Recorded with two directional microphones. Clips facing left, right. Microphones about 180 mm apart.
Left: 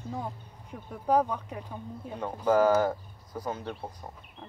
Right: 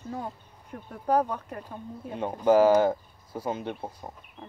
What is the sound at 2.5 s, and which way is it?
Speech, 25° right (ahead or behind).